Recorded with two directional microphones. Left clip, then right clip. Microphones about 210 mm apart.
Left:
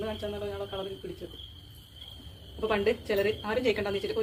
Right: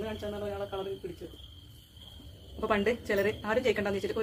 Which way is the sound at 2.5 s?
15° right (ahead or behind).